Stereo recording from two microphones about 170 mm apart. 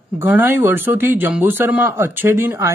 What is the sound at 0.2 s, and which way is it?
Speech, 15° right (ahead or behind).